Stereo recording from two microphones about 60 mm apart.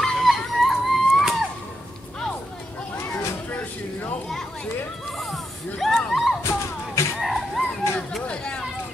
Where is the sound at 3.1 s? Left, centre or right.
Left.